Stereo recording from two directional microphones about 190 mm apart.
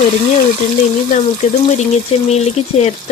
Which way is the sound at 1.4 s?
35° left (ahead or behind).